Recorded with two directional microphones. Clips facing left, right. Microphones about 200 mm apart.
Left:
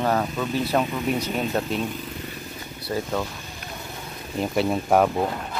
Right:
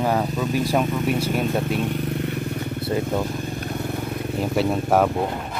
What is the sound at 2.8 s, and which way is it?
Speech, 20° right (ahead or behind).